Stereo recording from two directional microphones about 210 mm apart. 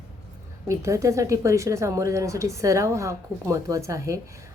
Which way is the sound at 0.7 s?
15° right (ahead or behind).